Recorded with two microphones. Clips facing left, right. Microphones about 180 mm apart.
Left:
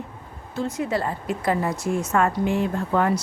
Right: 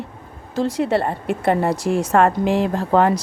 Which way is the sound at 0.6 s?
90° right.